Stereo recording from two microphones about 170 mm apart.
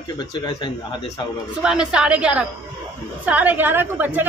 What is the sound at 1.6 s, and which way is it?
A woman's voice, 5° right (ahead or behind).